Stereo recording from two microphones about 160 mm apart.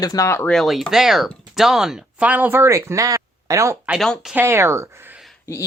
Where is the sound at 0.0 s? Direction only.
20° left (ahead or behind).